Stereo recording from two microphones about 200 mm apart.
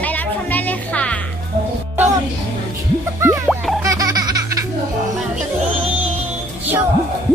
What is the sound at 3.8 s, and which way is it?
Baby laughter, 15° right (ahead or behind).